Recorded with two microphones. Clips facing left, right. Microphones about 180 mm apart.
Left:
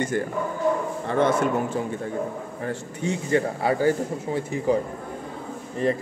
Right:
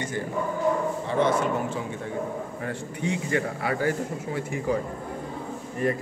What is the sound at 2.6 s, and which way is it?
Speech, 40° left (ahead or behind).